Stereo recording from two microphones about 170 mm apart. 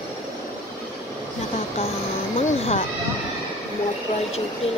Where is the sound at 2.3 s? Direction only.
35° left (ahead or behind).